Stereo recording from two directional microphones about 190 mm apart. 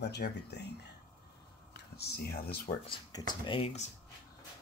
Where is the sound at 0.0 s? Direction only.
60° left (ahead or behind).